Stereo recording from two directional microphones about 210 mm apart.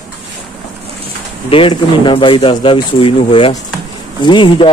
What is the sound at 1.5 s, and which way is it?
Speech, 25° left (ahead or behind).